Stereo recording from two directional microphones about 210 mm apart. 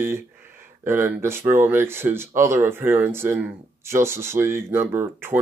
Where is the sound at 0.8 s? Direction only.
10° right (ahead or behind).